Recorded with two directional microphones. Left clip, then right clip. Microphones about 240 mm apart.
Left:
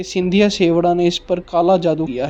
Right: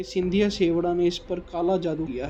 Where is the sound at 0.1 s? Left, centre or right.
Left.